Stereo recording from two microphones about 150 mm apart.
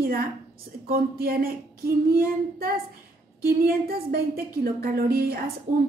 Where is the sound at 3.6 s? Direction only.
90° right.